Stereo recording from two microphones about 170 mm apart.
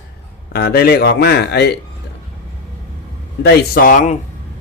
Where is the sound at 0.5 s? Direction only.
65° left (ahead or behind).